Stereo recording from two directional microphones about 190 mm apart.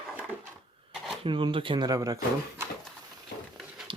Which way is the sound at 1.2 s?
25° right (ahead or behind).